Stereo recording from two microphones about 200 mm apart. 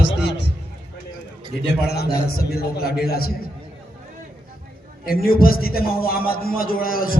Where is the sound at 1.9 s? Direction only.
55° left (ahead or behind).